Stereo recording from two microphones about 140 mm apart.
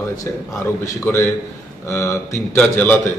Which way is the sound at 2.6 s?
10° left (ahead or behind).